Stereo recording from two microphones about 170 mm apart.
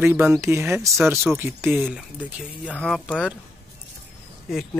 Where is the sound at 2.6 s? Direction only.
5° left (ahead or behind).